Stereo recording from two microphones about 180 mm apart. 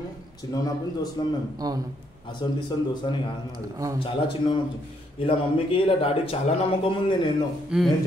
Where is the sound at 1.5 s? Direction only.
20° right (ahead or behind).